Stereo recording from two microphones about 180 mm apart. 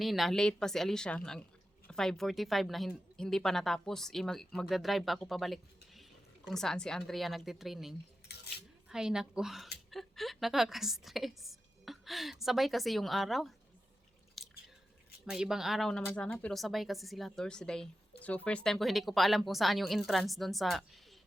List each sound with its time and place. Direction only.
0.0 s speech: centre (ahead or behind)
8.3 s a sound: 60° left (ahead or behind)
8.9 s a woman's voice: 5° right (ahead or behind)
14.4 s drip: centre (ahead or behind)
15.3 s speech: 5° right (ahead or behind)